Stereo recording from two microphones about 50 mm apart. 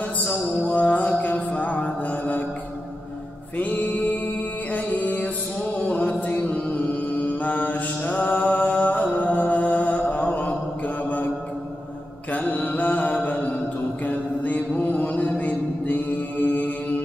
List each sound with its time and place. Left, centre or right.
0.3 s music: left
3.5 s mantra: left
5.8 s music: left
7.3 s mantra: left
12.3 s mantra: left
14.8 s music: left